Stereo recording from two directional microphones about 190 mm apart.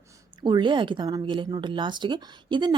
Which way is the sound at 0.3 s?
25° right (ahead or behind).